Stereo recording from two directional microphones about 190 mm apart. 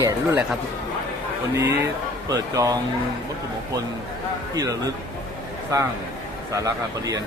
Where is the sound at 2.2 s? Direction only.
20° right (ahead or behind).